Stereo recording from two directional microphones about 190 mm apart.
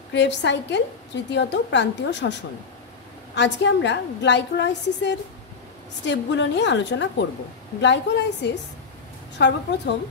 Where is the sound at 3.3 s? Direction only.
70° left (ahead or behind).